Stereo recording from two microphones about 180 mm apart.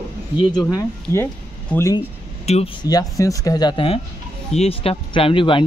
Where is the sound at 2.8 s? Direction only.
20° left (ahead or behind).